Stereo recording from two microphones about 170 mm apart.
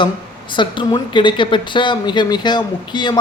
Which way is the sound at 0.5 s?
30° left (ahead or behind).